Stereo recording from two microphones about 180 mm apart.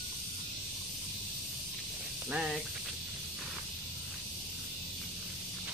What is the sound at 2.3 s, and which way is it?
Speech, 5° right (ahead or behind).